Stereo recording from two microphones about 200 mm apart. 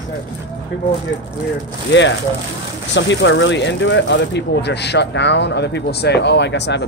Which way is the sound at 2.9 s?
65° left (ahead or behind).